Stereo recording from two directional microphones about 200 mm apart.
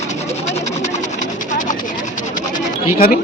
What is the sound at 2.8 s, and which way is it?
Speech, 45° left (ahead or behind).